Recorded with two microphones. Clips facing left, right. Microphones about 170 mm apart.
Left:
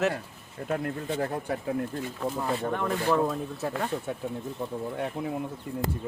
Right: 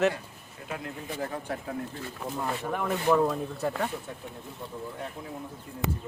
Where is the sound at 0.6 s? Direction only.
50° left (ahead or behind).